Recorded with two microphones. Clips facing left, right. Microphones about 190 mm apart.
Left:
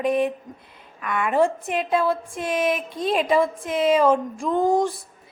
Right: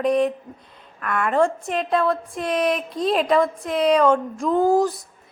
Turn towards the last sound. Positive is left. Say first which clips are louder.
# right 2 dB
turn(degrees=-5)  # may be behind; listen again after turning